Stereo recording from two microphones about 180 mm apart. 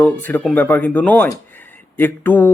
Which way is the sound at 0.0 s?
10° left (ahead or behind).